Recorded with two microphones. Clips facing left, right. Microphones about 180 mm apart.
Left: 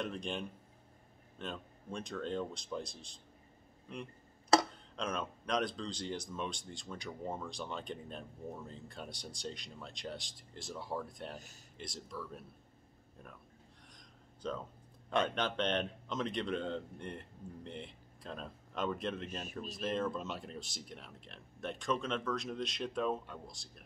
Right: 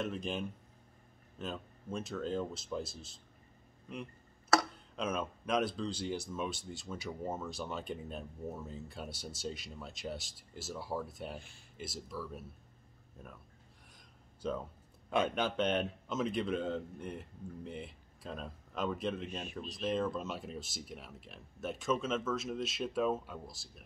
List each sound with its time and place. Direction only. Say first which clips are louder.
0.0 s speech: right 2 dB; 5° right (ahead or behind)
4.9 s speech: right 2 dB; 5° right (ahead or behind)
11.3 s speech: right 2 dB; 40° left (ahead or behind)
11.7 s speech: right 2 dB; 5° right (ahead or behind)
13.9 s a sound: left 2 dB; 10° right (ahead or behind)
15.0 s speech: right 1 dB; 5° right (ahead or behind)